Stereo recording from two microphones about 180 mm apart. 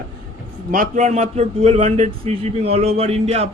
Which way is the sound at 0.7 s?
45° right (ahead or behind).